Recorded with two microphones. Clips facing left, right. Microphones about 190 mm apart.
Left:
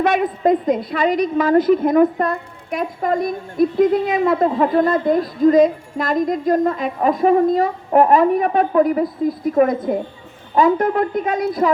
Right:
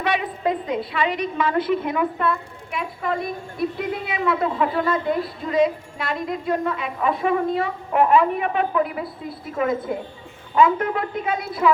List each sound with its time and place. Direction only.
0.0 s a woman's voice: 45° left (ahead or behind)